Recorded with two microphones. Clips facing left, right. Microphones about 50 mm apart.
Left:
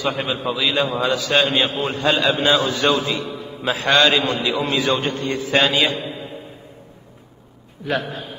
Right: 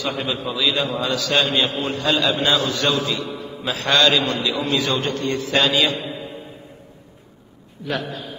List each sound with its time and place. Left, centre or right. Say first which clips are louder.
0.0 s a man's voice: left 2 dB; centre